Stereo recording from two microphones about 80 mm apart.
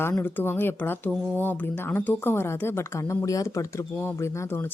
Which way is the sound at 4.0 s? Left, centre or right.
Left.